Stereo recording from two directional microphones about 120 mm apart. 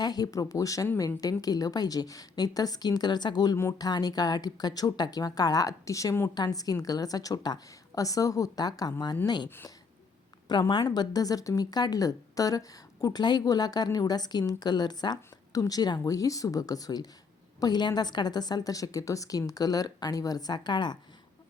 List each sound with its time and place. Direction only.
0.0 s a woman's voice: 35° left (ahead or behind)
10.5 s a woman's voice: 40° left (ahead or behind)